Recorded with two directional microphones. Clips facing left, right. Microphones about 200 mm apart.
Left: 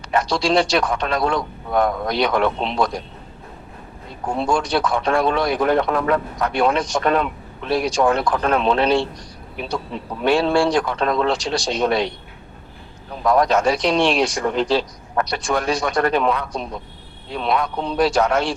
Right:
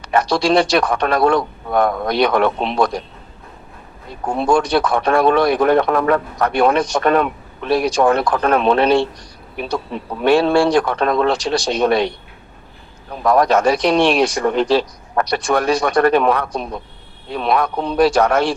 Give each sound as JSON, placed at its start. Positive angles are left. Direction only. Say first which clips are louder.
{"t": 0.0, "sound": "a man's voice", "louder": "right 4 dB", "side_deg": -65}
{"t": 4.4, "sound": "a man's voice", "louder": "right 5 dB", "side_deg": -65}
{"t": 13.2, "sound": "a man's voice", "louder": "right 3 dB", "side_deg": -60}